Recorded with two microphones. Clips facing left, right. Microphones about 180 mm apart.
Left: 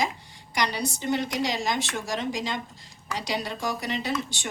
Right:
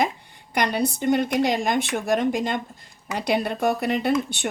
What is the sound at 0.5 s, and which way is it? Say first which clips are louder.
Speech: right 5 dB; 55° right (ahead or behind).